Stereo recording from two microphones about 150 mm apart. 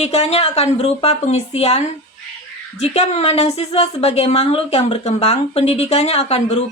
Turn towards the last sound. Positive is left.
turn(degrees=45)  # may be behind; listen again after turning